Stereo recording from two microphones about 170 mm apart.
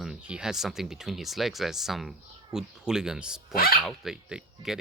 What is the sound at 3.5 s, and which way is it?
Speech, 60° left (ahead or behind).